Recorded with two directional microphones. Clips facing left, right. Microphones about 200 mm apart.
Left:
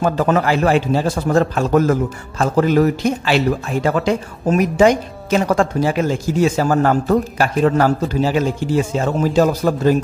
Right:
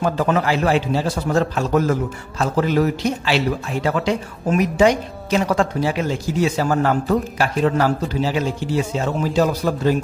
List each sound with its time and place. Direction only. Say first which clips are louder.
0.0 s a man's voice: left 3 dB; 45° left (ahead or behind)